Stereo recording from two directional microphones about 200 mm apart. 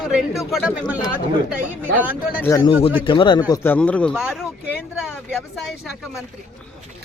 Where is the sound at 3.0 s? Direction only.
25° left (ahead or behind).